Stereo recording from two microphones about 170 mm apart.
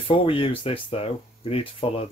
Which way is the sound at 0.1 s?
30° left (ahead or behind).